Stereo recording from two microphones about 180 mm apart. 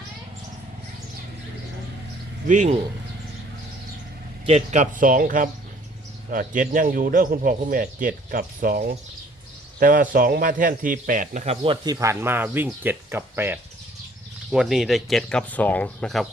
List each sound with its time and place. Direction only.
2.5 s speech: 40° right (ahead or behind)
4.4 s a man's voice: 40° right (ahead or behind)
9.8 s a man's voice: 50° right (ahead or behind)
11.6 s speech: 30° right (ahead or behind)
11.9 s speech: 15° right (ahead or behind)
14.5 s speech: centre (ahead or behind)